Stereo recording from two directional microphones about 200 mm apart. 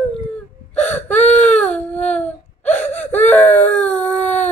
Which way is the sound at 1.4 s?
5° left (ahead or behind).